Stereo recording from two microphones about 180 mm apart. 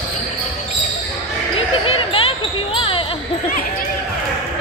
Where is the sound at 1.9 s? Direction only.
30° left (ahead or behind).